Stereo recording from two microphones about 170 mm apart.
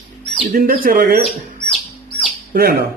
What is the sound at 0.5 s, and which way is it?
Speech, 55° right (ahead or behind).